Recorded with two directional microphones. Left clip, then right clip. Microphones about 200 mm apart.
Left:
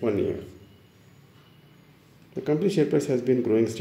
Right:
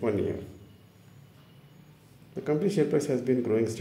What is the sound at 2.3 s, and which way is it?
Speech, 25° left (ahead or behind).